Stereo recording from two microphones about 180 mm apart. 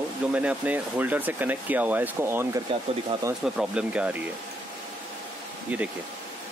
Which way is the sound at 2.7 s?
30° right (ahead or behind).